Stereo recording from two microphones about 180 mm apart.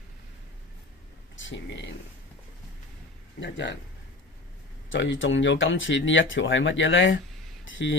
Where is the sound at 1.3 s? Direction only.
90° left.